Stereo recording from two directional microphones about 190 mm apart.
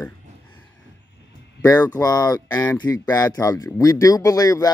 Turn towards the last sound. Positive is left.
turn(degrees=20)  # may be behind; listen again after turning